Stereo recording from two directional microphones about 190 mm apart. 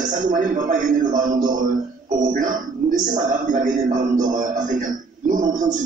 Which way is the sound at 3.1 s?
40° right (ahead or behind).